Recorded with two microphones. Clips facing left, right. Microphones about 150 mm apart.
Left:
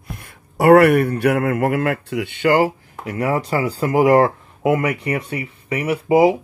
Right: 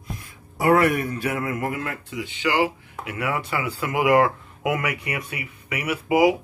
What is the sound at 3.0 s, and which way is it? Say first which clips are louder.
Speech: left 7 dB; 35° left (ahead or behind).